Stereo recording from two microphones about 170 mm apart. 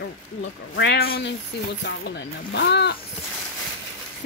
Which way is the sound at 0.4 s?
85° left.